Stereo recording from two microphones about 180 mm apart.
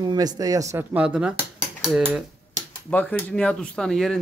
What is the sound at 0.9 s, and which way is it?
Speech, 5° right (ahead or behind).